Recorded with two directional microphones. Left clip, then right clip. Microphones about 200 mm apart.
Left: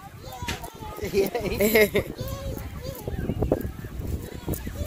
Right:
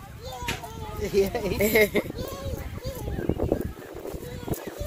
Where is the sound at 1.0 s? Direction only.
55° left (ahead or behind).